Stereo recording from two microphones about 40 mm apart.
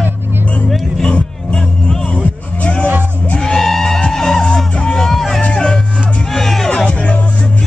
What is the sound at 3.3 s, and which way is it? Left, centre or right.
Music, centre.